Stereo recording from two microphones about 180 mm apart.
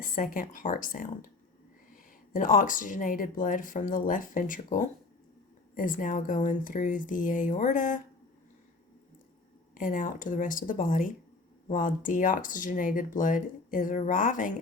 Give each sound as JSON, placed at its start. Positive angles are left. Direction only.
{"t": 0.0, "sound": "speech", "side_deg": 50}
{"t": 9.7, "sound": "speech", "side_deg": 50}